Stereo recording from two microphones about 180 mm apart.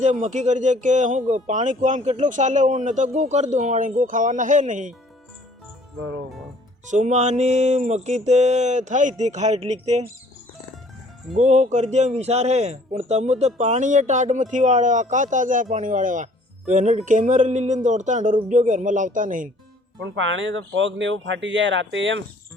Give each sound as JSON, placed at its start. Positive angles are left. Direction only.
{"t": 0.0, "sound": "speech", "side_deg": -40}
{"t": 6.8, "sound": "a man's voice", "side_deg": -40}
{"t": 11.3, "sound": "a man's voice", "side_deg": -40}
{"t": 20.1, "sound": "speech", "side_deg": -90}